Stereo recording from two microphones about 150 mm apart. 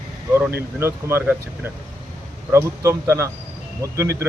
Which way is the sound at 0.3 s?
15° right (ahead or behind).